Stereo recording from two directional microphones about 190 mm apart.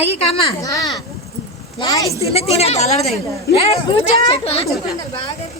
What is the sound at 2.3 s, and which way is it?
Speech, 35° left (ahead or behind).